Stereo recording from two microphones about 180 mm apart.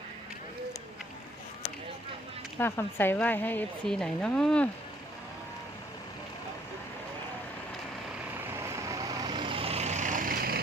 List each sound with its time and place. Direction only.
2.6 s speech: 10° left (ahead or behind)
8.4 s vehicle: 15° right (ahead or behind); by 10.6 s 55° right (ahead or behind)